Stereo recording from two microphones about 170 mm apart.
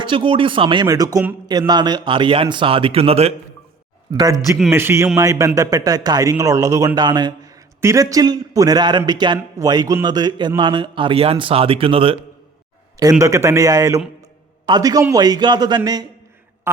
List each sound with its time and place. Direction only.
0.0 s speech: 30° right (ahead or behind)
4.1 s a man's voice: 20° right (ahead or behind)
13.0 s speech: 20° right (ahead or behind)